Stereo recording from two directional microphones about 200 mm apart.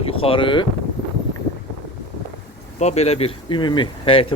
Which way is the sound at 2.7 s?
35° left (ahead or behind).